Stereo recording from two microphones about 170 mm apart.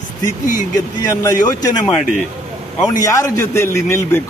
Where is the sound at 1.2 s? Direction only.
20° left (ahead or behind).